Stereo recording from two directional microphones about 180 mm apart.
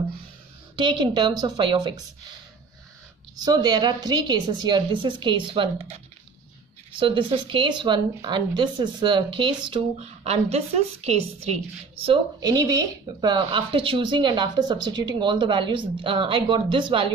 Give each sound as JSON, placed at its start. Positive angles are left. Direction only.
{"t": 0.7, "sound": "a woman's voice", "side_deg": -25}
{"t": 3.3, "sound": "a woman's voice", "side_deg": -20}
{"t": 7.0, "sound": "a woman's voice", "side_deg": -30}